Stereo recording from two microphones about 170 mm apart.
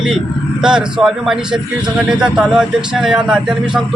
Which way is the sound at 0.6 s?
5° right (ahead or behind).